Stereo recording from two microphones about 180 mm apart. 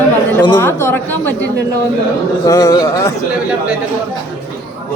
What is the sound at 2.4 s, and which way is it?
Speech, 20° left (ahead or behind).